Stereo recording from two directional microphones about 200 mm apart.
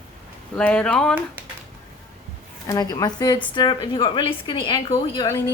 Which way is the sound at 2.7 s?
20° left (ahead or behind).